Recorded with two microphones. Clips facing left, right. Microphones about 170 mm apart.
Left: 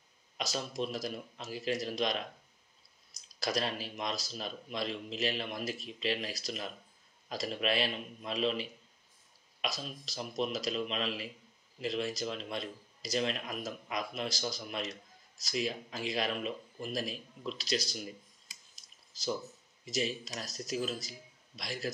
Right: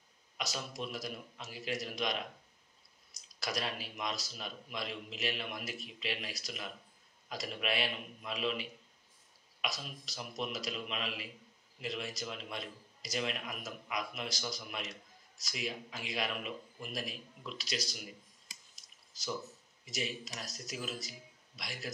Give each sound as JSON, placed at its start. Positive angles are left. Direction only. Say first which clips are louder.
{"t": 0.4, "sound": "speech", "louder": "left 5 dB", "side_deg": 30}
{"t": 19.9, "sound": "speech", "louder": "left 5 dB", "side_deg": 30}
{"t": 21.5, "sound": "speech", "louder": "left 6 dB", "side_deg": 35}